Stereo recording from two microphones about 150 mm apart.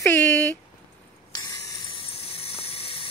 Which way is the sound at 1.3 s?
25° left (ahead or behind).